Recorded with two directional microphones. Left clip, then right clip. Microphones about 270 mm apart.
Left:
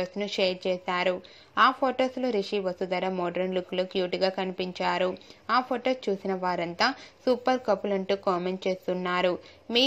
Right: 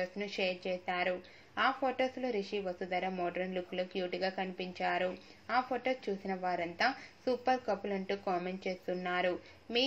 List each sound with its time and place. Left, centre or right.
0.0 s a woman's voice: left